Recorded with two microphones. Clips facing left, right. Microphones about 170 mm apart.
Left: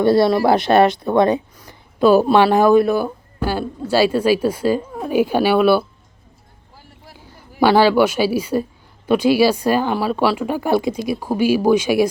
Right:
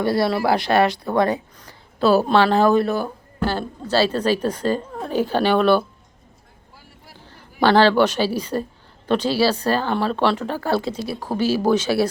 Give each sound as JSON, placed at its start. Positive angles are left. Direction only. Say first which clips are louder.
{"t": 0.0, "sound": "speech", "louder": "left 6 dB", "side_deg": 25}
{"t": 7.2, "sound": "a woman's voice", "louder": "left 3 dB", "side_deg": 10}